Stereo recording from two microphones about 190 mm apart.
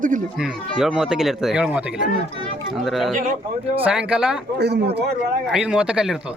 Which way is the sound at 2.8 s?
Centre (ahead or behind).